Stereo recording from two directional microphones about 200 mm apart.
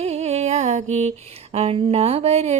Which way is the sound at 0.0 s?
35° right (ahead or behind).